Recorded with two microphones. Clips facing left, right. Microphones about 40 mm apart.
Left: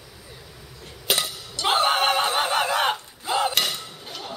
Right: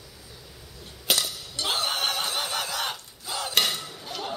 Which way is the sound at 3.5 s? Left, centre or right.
Centre.